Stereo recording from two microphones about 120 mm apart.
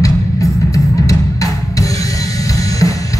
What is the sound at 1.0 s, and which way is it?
Music, 30° left (ahead or behind).